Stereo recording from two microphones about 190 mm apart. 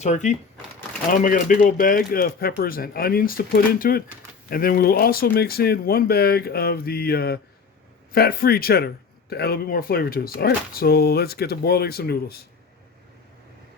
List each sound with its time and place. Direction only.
0.0 s speech: 40° left (ahead or behind); by 12.5 s 55° left (ahead or behind)